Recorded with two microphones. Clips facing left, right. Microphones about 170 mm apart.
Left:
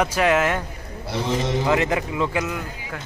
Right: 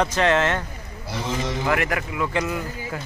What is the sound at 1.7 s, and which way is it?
Speech, 20° left (ahead or behind).